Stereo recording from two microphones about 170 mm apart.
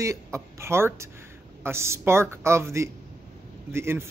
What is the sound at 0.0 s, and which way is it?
Speech, 15° right (ahead or behind).